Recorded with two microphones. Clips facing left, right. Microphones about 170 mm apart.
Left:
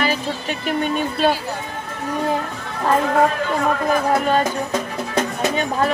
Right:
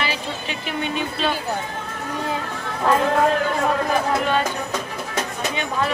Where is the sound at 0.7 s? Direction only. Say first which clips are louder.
Left 5 dB; 45° left (ahead or behind).